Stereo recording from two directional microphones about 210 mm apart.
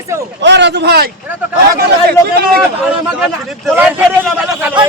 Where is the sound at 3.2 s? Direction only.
5° right (ahead or behind).